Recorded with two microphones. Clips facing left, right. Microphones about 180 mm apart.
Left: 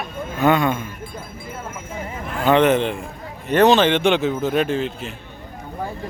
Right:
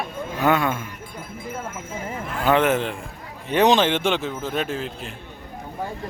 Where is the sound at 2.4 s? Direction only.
5° right (ahead or behind).